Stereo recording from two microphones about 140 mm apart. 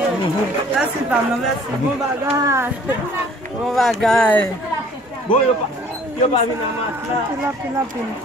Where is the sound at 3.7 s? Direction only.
Centre (ahead or behind).